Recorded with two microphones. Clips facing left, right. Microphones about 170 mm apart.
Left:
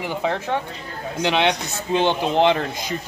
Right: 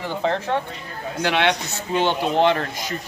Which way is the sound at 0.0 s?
15° left (ahead or behind).